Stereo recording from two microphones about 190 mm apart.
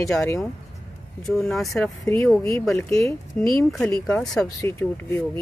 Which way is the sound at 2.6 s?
Centre (ahead or behind).